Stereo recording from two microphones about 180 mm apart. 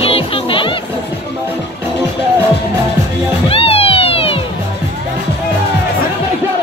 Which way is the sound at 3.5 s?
30° left (ahead or behind).